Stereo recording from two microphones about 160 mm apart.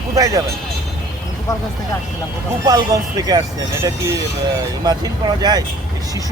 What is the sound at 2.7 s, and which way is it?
Speech, 25° right (ahead or behind).